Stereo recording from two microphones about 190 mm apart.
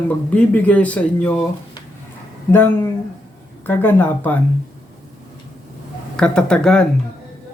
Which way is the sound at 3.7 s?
10° left (ahead or behind).